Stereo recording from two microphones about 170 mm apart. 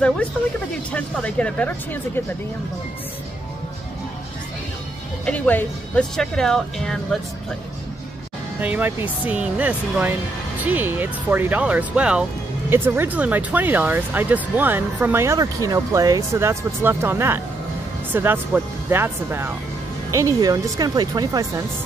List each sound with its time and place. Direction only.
0.9 s speech: 10° left (ahead or behind)
5.2 s speech: 10° left (ahead or behind)
8.5 s speech: 10° right (ahead or behind)